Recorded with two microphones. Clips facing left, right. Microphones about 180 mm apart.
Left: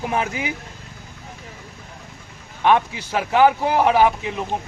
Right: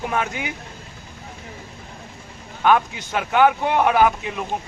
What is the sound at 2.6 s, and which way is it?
Speech, 30° left (ahead or behind).